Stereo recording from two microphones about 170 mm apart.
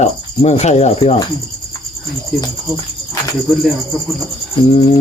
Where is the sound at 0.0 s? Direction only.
40° left (ahead or behind).